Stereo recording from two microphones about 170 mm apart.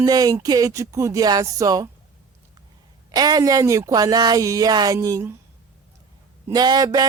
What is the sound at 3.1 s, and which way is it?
Speech, 25° right (ahead or behind).